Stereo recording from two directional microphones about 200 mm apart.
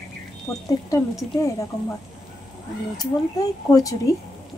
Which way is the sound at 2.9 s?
20° left (ahead or behind).